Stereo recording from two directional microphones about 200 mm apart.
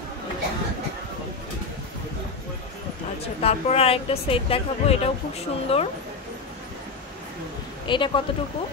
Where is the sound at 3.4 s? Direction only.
30° left (ahead or behind).